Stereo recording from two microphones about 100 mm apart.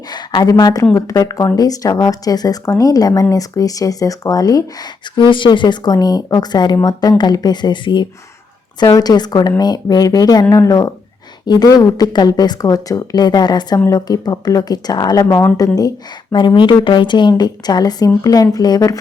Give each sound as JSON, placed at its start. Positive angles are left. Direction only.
{"t": 0.1, "sound": "speech", "side_deg": 45}
{"t": 0.6, "sound": "speech", "side_deg": 35}
{"t": 13.7, "sound": "speech", "side_deg": 30}
{"t": 16.8, "sound": "speech", "side_deg": 55}